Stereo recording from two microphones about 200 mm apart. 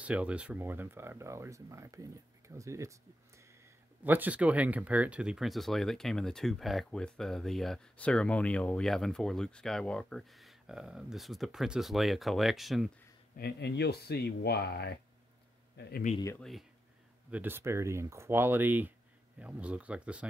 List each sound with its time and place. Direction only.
0.0 s speech: 5° right (ahead or behind)
4.0 s speech: 10° right (ahead or behind)
13.4 s speech: 55° left (ahead or behind)
16.3 s speech: centre (ahead or behind)
17.3 s speech: 10° right (ahead or behind)